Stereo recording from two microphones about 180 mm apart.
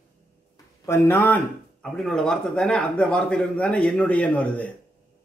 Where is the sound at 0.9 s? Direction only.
10° left (ahead or behind).